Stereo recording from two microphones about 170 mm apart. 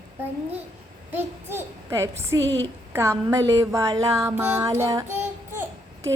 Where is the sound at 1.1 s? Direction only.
15° right (ahead or behind).